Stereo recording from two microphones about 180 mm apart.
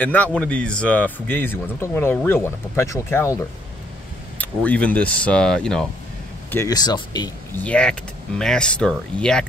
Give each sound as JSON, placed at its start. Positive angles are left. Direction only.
{"t": 0.0, "sound": "a man's voice", "side_deg": 10}
{"t": 6.5, "sound": "speech", "side_deg": 20}
{"t": 7.5, "sound": "a man's voice", "side_deg": 5}